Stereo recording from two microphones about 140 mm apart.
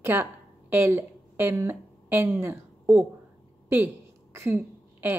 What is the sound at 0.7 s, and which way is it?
Speech, 15° right (ahead or behind).